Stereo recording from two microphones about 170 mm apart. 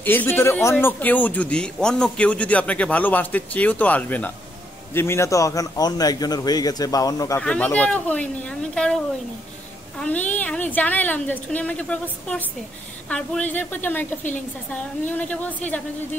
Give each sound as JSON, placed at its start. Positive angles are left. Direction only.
{"t": 0.0, "sound": "a man's voice", "side_deg": 10}
{"t": 7.4, "sound": "speech", "side_deg": 10}